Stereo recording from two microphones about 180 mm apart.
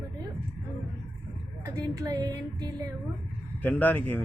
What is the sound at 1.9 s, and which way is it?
Speech, 20° right (ahead or behind).